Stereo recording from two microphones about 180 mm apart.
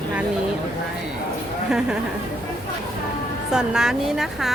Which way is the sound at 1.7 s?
5° right (ahead or behind).